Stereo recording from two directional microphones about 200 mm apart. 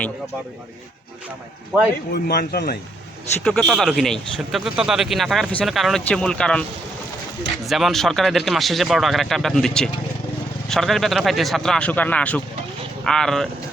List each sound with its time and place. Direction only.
1.7 s a man's voice: 5° right (ahead or behind)
2.1 s speech: 50° left (ahead or behind)
3.4 s a man's voice: centre (ahead or behind)